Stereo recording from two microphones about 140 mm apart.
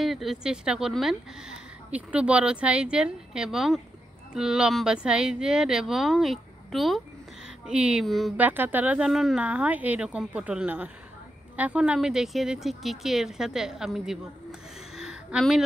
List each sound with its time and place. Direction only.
0.0 s speech: centre (ahead or behind)
8.4 s speech: 15° right (ahead or behind)